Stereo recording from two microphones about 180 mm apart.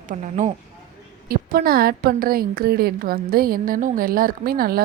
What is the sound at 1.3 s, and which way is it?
A woman's voice, 55° right (ahead or behind).